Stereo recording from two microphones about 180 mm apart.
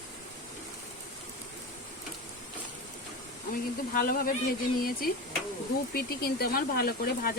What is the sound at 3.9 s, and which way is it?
Speech, 50° left (ahead or behind).